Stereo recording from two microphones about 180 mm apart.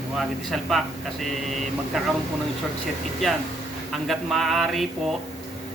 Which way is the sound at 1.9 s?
Centre (ahead or behind).